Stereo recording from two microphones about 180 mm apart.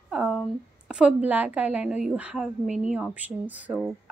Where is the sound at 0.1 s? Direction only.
5° right (ahead or behind).